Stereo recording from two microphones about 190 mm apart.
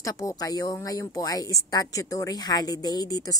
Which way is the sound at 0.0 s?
15° left (ahead or behind).